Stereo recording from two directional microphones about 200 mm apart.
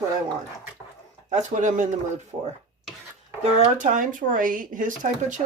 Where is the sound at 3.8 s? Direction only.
40° right (ahead or behind).